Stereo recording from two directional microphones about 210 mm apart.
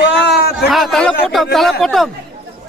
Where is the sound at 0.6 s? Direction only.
Centre (ahead or behind).